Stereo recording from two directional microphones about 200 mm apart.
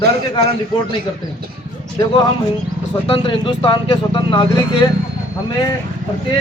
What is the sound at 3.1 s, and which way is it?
Speech, 25° left (ahead or behind).